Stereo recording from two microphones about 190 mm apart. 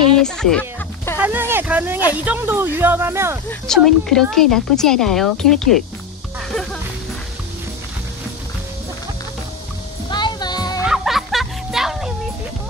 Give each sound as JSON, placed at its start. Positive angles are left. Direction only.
{"t": 0.2, "sound": "speech", "side_deg": 5}
{"t": 1.1, "sound": "speech", "side_deg": -10}
{"t": 3.4, "sound": "speech", "side_deg": 0}
{"t": 6.5, "sound": "music", "side_deg": 0}
{"t": 10.0, "sound": "music", "side_deg": 25}
{"t": 10.8, "sound": "music", "side_deg": 0}